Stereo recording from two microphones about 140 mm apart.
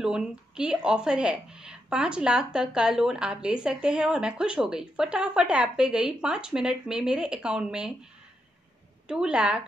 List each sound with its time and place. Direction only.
0.0 s a woman's voice: 5° right (ahead or behind)
9.0 s speech: 5° right (ahead or behind)